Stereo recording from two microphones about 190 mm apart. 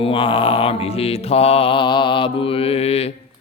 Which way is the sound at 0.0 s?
25° left (ahead or behind).